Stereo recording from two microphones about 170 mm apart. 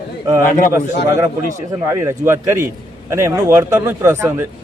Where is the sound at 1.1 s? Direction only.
15° right (ahead or behind).